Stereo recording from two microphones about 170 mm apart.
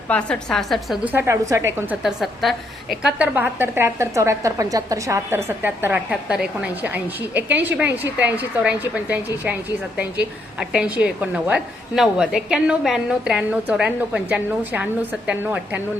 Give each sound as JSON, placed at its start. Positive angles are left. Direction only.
{"t": 0.1, "sound": "a woman's voice", "side_deg": 5}
{"t": 1.1, "sound": "a woman's voice", "side_deg": -15}
{"t": 2.0, "sound": "a woman's voice", "side_deg": 0}